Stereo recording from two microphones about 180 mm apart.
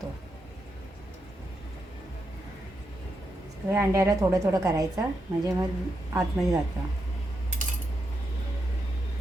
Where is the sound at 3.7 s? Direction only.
15° right (ahead or behind).